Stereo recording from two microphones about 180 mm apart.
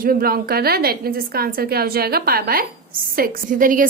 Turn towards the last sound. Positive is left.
turn(degrees=-50)  # may be behind; listen again after turning